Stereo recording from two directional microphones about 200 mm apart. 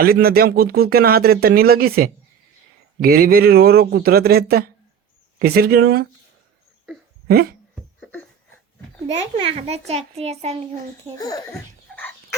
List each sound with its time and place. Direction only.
0.0 s speech: 50° right (ahead or behind)
7.3 s a sound: 50° right (ahead or behind)
9.3 s a child's voice: 30° right (ahead or behind)
11.2 s speech: 20° left (ahead or behind)
11.9 s bird: 5° left (ahead or behind)